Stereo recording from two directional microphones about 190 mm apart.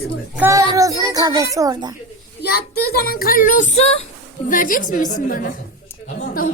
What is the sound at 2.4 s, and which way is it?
A child's voice, 55° left (ahead or behind).